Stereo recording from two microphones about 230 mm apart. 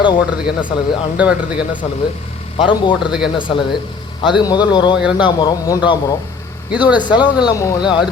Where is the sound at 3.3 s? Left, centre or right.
Left.